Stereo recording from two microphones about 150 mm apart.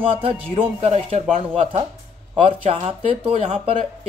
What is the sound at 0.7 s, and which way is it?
Speech, 45° right (ahead or behind).